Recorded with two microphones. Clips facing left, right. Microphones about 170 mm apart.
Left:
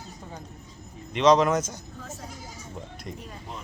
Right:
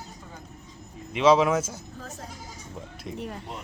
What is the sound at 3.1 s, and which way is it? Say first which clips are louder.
Speech: right 7 dB; 65° right (ahead or behind).